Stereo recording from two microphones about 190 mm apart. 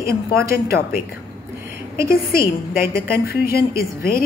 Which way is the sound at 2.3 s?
50° left (ahead or behind).